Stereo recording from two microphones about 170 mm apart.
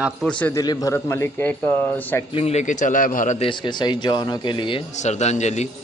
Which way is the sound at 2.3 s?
40° left (ahead or behind).